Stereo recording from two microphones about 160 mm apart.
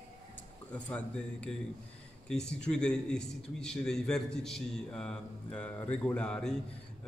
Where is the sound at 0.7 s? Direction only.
10° left (ahead or behind).